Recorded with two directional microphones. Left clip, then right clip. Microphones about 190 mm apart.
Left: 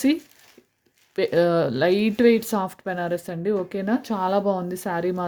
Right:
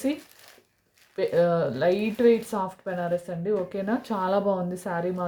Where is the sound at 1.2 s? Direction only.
45° left (ahead or behind).